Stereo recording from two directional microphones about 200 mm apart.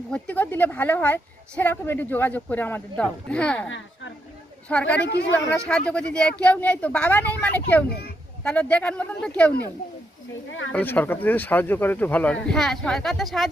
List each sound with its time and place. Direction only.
0.1 s a woman's voice: 5° left (ahead or behind)
4.7 s a woman's voice: 5° left (ahead or behind)
7.9 s a child's voice: 50° left (ahead or behind)
8.4 s a woman's voice: 5° left (ahead or behind)
10.7 s a woman's voice: 10° left (ahead or behind)